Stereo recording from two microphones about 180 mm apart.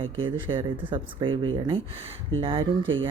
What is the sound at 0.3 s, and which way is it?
Speech, 25° right (ahead or behind).